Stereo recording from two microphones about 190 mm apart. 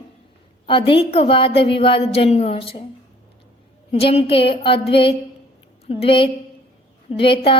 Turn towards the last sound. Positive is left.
turn(degrees=25)  # may be behind; listen again after turning